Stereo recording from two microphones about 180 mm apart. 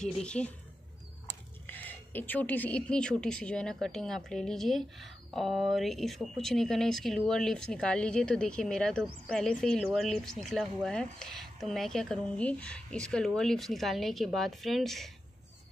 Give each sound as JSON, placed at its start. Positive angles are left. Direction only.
{"t": 0.0, "sound": "a woman's voice", "side_deg": 5}
{"t": 1.7, "sound": "a woman's voice", "side_deg": 10}